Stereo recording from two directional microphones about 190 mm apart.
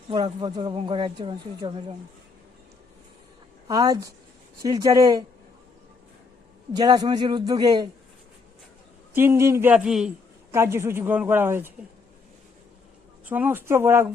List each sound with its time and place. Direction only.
0.1 s speech: 25° right (ahead or behind)
3.7 s speech: 20° right (ahead or behind)
6.7 s speech: 20° right (ahead or behind)
9.1 s speech: 15° right (ahead or behind)
10.5 s speech: 15° right (ahead or behind)
13.2 s speech: 10° right (ahead or behind)